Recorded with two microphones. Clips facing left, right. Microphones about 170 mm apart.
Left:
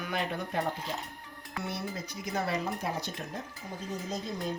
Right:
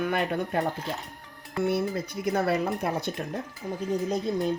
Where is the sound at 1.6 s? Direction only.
55° right (ahead or behind).